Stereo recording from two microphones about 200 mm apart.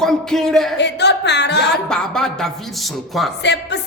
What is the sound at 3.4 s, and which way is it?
Speech, 55° left (ahead or behind).